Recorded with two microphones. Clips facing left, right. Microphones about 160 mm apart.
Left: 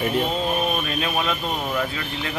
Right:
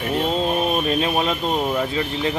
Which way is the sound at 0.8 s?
30° right (ahead or behind).